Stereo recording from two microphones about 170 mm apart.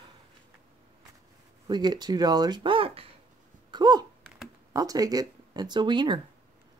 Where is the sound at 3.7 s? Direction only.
25° right (ahead or behind).